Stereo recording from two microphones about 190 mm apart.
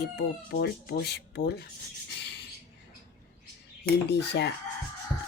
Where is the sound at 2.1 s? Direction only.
60° left (ahead or behind).